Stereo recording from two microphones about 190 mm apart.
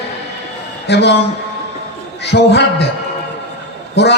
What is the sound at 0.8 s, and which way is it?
Speech, 65° left (ahead or behind).